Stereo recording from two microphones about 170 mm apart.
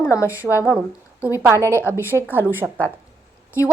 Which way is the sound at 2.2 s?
10° right (ahead or behind).